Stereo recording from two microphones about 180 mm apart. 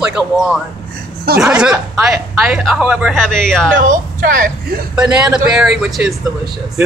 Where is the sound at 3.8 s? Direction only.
50° right (ahead or behind).